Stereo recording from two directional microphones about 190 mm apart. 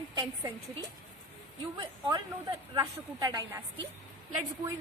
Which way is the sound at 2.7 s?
20° right (ahead or behind).